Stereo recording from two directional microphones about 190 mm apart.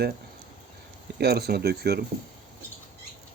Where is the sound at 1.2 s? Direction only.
55° right (ahead or behind).